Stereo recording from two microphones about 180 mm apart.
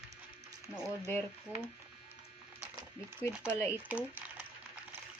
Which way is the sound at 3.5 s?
15° left (ahead or behind).